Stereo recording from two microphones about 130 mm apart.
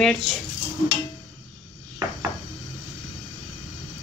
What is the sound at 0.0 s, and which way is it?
Speech, centre (ahead or behind).